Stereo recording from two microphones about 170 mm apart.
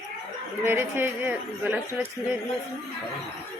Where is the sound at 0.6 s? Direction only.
15° right (ahead or behind).